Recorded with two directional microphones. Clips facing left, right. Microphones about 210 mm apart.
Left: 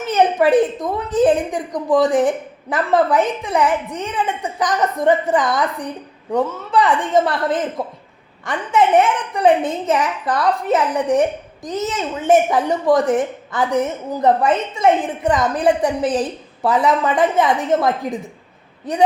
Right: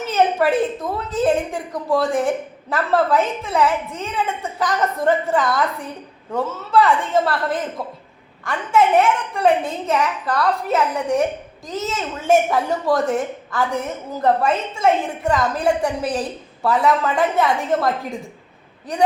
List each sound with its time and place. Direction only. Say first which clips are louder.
0.1 s a woman's voice: left 4 dB; 15° left (ahead or behind)